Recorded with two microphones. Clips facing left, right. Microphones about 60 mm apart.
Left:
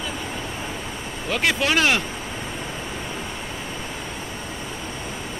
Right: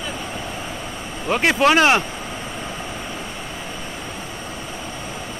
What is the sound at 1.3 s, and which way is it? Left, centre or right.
Speech, right.